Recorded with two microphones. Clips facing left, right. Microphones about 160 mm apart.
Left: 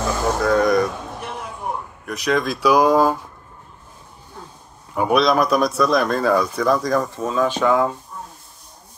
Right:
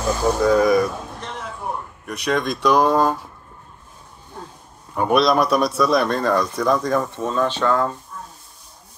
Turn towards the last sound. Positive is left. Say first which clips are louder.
# left 2 dB
turn(degrees=10)  # may be behind; listen again after turning